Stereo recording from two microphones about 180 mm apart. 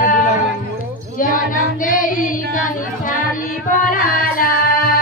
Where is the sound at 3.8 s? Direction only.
50° left (ahead or behind).